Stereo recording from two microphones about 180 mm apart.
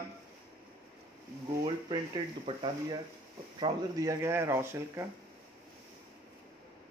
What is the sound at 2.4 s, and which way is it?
Speech, 30° right (ahead or behind).